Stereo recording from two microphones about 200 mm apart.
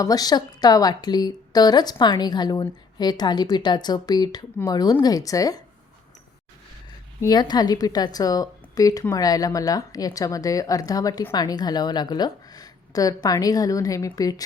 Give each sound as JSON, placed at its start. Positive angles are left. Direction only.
{"t": 0.0, "sound": "a woman's voice", "side_deg": 20}
{"t": 7.2, "sound": "a woman's voice", "side_deg": 20}